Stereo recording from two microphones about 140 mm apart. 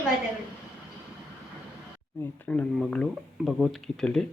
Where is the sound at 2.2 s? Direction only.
10° left (ahead or behind).